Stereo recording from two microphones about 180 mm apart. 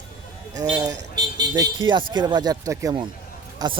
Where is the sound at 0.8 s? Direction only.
20° right (ahead or behind).